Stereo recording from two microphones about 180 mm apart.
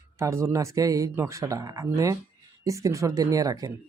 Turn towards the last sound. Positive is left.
turn(degrees=-20)  # may be behind; listen again after turning